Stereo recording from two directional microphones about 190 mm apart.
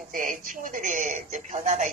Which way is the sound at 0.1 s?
45° right (ahead or behind).